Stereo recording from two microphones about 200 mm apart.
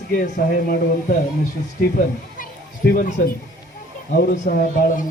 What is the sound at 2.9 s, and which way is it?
Speech, 50° left (ahead or behind).